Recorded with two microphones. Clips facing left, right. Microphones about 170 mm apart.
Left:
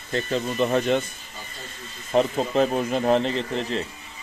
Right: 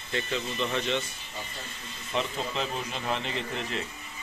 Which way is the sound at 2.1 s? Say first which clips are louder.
Left 10 dB; 45° left (ahead or behind).